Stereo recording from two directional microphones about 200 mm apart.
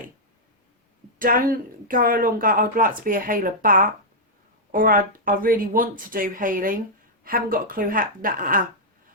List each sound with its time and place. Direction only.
1.2 s speech: 45° right (ahead or behind)